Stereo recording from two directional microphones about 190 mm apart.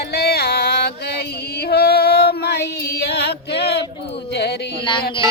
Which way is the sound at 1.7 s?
60° left (ahead or behind).